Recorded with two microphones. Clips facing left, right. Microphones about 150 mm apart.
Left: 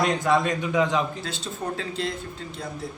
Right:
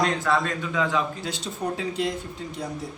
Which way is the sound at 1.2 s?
15° right (ahead or behind).